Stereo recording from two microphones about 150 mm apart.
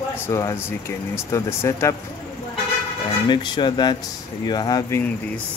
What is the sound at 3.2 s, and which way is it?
Speech, 30° left (ahead or behind).